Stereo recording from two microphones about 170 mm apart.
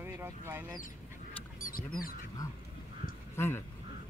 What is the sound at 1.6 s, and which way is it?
Goose, 55° left (ahead or behind).